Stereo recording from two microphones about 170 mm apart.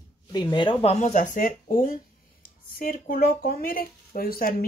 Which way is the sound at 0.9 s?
45° left (ahead or behind).